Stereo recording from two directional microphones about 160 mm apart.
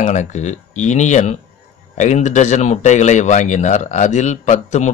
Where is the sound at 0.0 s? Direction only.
45° left (ahead or behind).